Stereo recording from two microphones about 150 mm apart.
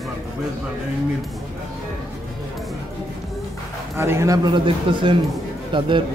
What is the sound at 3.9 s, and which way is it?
Speech, 15° right (ahead or behind).